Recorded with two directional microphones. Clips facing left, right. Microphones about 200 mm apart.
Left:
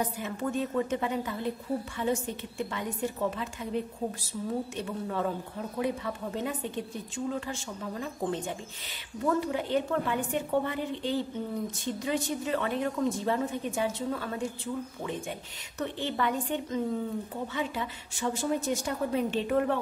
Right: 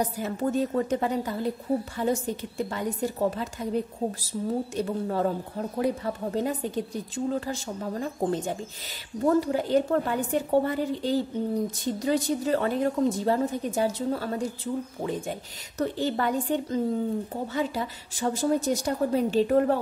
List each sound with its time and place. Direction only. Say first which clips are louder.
0.0 s a woman's voice: right 4 dB; 40° right (ahead or behind)